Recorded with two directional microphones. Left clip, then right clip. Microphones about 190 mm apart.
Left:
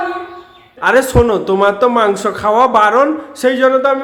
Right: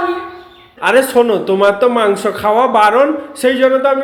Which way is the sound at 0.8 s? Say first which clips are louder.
Even; 15° left (ahead or behind).